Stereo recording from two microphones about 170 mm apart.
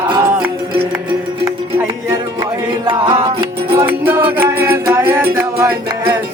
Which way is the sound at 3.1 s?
20° right (ahead or behind).